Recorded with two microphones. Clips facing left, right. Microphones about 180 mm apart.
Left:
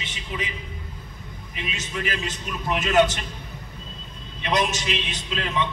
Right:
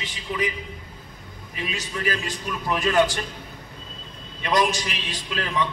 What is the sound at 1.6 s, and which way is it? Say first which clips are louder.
A man's voice: right 2 dB; 25° left (ahead or behind).